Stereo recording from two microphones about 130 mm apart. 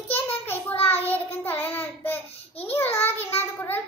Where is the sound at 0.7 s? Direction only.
50° left (ahead or behind).